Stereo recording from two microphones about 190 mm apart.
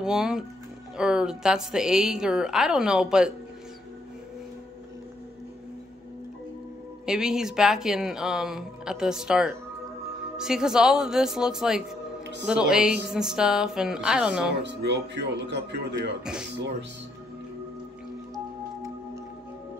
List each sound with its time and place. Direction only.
0.0 s speech: 5° right (ahead or behind)
7.1 s speech: 5° right (ahead or behind)
14.6 s speech: 65° right (ahead or behind)